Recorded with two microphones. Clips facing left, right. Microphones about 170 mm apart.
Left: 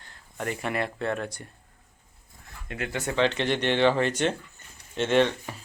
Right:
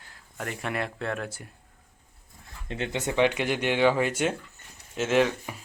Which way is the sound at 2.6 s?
25° right (ahead or behind).